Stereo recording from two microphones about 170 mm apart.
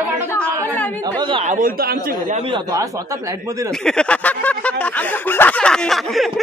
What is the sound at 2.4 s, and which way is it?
Speech, 30° right (ahead or behind).